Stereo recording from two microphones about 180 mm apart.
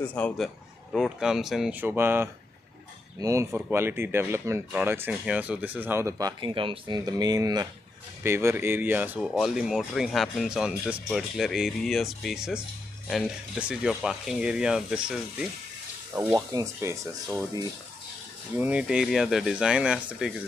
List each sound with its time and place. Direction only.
0.0 s a man's voice: 5° left (ahead or behind)
16.2 s speech: 15° right (ahead or behind)
18.6 s speech: 5° right (ahead or behind)